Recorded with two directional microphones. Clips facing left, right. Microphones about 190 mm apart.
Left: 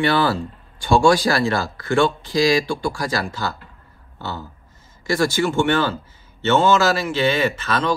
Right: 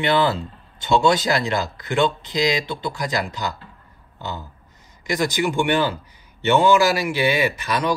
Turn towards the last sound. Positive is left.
turn(degrees=-15)  # may be behind; listen again after turning